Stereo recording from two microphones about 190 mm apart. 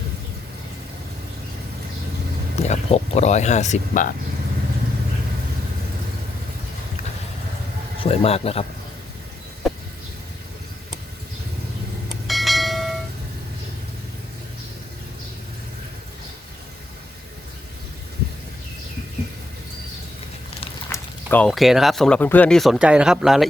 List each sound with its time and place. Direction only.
2.6 s speech: 35° left (ahead or behind)
8.0 s speech: 30° left (ahead or behind)
12.3 s bell: centre (ahead or behind)
20.9 s speech: 10° left (ahead or behind)